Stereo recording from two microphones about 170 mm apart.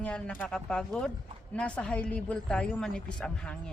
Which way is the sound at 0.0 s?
5° left (ahead or behind).